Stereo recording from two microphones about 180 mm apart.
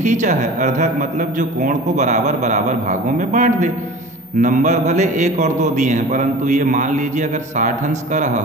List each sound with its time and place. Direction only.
0.0 s a man's voice: 40° right (ahead or behind)